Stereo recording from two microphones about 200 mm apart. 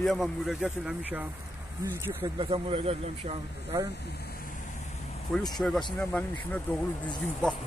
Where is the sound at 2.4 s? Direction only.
30° right (ahead or behind).